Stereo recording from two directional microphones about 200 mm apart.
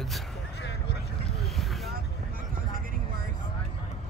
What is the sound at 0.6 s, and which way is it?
Vehicle, 60° left (ahead or behind).